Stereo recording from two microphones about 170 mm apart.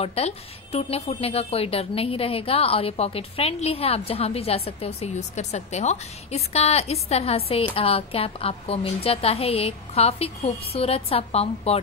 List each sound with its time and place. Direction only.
0.0 s speech: 35° left (ahead or behind)